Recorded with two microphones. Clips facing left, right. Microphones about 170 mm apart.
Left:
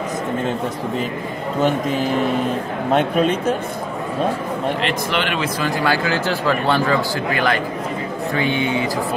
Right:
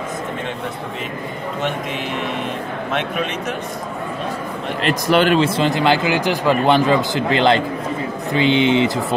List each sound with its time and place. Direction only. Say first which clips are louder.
2.9 s a man's voice: left 7 dB; 35° left (ahead or behind)
4.8 s speech: right 6 dB; 40° right (ahead or behind); by 9.0 s 20° right (ahead or behind)